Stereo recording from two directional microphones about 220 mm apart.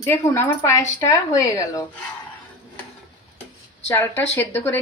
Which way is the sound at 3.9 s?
10° left (ahead or behind).